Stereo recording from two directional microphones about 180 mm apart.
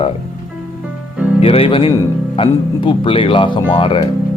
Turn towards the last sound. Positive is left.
turn(degrees=30)  # may be behind; listen again after turning